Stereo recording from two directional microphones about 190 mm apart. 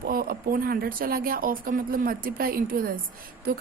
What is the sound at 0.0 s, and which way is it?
Speech, 50° right (ahead or behind).